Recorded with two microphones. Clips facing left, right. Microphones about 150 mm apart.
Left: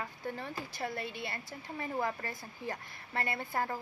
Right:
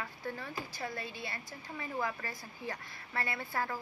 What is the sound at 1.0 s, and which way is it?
Speech, 55° left (ahead or behind).